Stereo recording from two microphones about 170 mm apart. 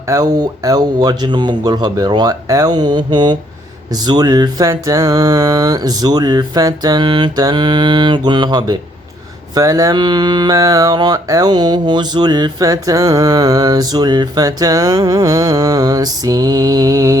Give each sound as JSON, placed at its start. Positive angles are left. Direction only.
{"t": 0.1, "sound": "speech", "side_deg": -20}